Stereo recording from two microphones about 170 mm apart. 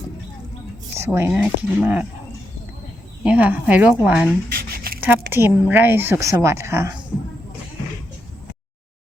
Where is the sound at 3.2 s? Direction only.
10° right (ahead or behind).